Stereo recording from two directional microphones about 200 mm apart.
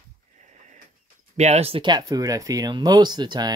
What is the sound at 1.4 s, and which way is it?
Speech, 30° right (ahead or behind).